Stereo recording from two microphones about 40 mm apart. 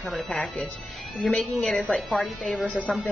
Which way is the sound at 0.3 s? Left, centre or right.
Centre.